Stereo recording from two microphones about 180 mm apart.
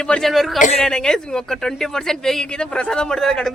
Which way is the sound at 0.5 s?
45° left (ahead or behind).